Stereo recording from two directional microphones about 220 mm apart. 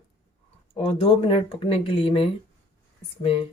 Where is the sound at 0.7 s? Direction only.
25° left (ahead or behind).